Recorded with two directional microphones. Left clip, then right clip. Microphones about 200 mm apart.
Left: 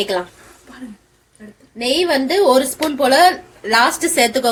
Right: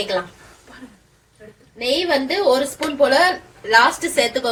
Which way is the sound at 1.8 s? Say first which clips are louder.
Left 3 dB; 55° left (ahead or behind).